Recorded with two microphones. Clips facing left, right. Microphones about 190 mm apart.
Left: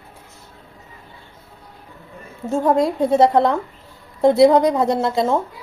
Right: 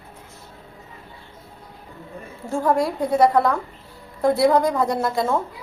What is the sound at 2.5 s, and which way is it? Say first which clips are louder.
A woman's voice: left 3 dB; 20° left (ahead or behind).